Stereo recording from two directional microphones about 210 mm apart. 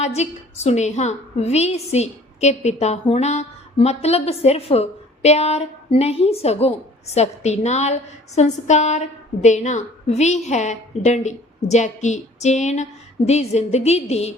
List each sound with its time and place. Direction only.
0.0 s a woman's voice: 30° left (ahead or behind)